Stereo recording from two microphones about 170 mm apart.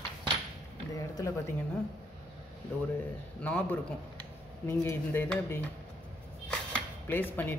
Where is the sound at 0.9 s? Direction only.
20° left (ahead or behind).